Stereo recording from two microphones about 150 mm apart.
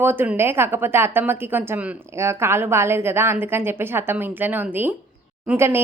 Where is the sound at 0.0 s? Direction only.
15° right (ahead or behind).